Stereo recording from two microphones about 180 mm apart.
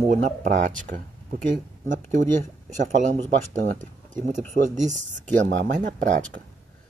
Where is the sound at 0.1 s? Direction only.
45° right (ahead or behind).